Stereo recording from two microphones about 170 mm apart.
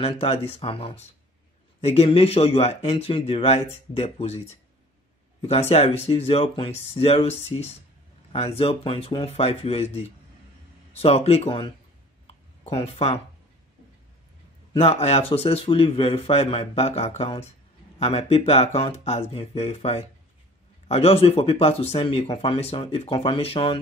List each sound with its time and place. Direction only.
0.0 s speech: 35° left (ahead or behind)
5.7 s speech: 35° left (ahead or behind)
12.3 s a sound: 35° left (ahead or behind)
14.7 s speech: 35° left (ahead or behind)